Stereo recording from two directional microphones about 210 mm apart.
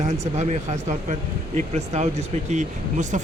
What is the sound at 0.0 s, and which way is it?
Speech, 30° right (ahead or behind).